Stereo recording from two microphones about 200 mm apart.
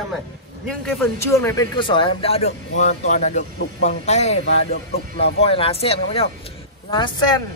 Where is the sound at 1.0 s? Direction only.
10° left (ahead or behind).